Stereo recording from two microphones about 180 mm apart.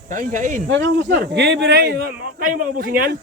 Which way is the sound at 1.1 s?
65° right (ahead or behind).